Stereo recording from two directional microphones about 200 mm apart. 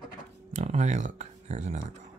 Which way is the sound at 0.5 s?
35° right (ahead or behind).